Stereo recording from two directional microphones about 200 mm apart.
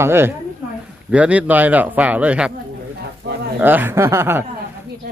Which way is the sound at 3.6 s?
10° right (ahead or behind).